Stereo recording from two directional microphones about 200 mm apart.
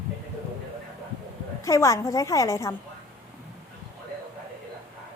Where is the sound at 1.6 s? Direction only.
15° left (ahead or behind).